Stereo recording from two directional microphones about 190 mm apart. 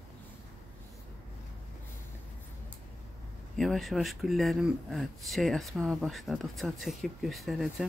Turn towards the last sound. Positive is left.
turn(degrees=0)  # may be behind; listen again after turning